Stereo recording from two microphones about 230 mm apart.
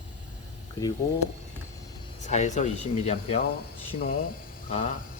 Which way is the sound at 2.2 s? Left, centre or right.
Left.